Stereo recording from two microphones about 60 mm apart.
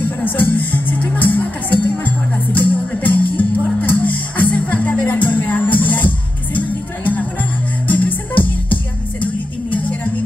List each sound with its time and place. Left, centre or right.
0.0 s music: left
7.9 s music: left